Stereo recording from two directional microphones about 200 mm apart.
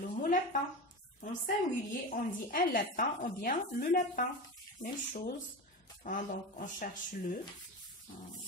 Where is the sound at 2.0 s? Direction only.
45° left (ahead or behind).